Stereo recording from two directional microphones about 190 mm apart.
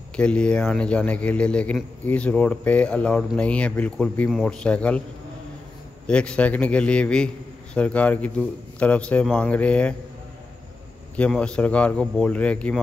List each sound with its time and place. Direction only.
0.1 s a man's voice: 5° left (ahead or behind)
6.0 s a man's voice: 5° left (ahead or behind)
11.1 s speech: 5° left (ahead or behind)